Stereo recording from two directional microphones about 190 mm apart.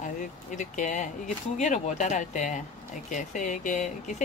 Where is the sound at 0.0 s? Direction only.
40° left (ahead or behind).